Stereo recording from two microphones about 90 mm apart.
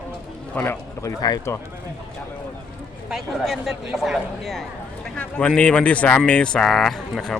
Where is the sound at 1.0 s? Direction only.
45° left (ahead or behind).